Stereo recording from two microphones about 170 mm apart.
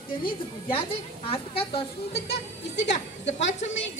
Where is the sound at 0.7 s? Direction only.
35° left (ahead or behind).